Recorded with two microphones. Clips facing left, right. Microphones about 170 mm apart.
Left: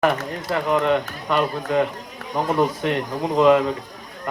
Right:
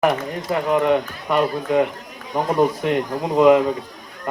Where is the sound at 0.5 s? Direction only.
15° right (ahead or behind).